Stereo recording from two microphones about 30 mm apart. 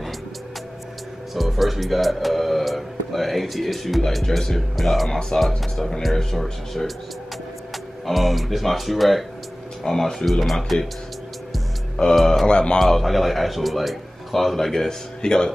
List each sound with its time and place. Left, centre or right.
1.3 s a man's voice: centre
5.3 s speech: left
5.8 s a man's voice: centre
9.8 s speech: centre
10.4 s a man's voice: centre
12.0 s speech: left
12.7 s a man's voice: centre
14.6 s a man's voice: centre